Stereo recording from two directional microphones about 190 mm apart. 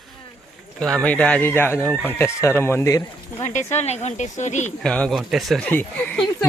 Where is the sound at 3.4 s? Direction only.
35° left (ahead or behind).